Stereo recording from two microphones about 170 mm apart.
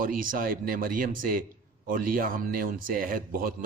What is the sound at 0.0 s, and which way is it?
A man's voice, 55° right (ahead or behind).